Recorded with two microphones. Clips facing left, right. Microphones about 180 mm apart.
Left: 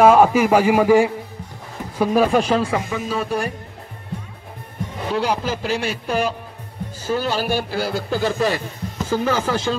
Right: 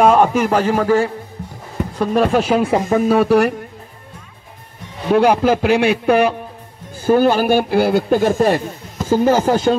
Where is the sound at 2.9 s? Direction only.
65° right (ahead or behind).